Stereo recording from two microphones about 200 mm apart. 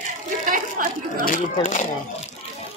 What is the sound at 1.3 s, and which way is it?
Speech, 40° left (ahead or behind).